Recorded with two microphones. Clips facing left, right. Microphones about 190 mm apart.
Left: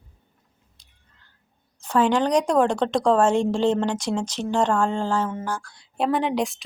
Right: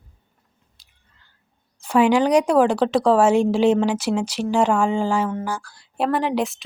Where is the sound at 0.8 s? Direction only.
5° right (ahead or behind).